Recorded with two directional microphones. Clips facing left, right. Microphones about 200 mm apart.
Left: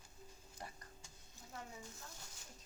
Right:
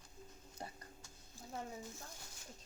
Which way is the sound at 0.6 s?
25° right (ahead or behind).